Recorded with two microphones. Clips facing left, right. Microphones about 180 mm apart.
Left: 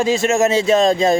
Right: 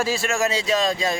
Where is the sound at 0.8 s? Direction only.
45° left (ahead or behind).